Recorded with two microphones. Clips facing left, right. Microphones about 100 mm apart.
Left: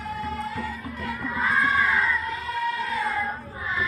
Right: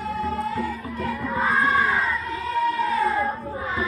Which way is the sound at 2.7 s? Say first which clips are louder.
Right 5 dB; 35° right (ahead or behind).